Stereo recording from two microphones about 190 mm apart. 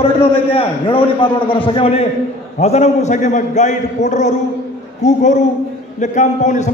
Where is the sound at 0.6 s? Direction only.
25° left (ahead or behind).